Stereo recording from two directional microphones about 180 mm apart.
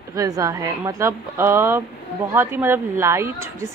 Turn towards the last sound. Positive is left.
turn(degrees=-15)  # may be behind; listen again after turning